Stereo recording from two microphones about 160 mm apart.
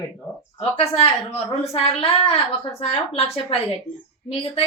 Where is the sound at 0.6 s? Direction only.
40° left (ahead or behind).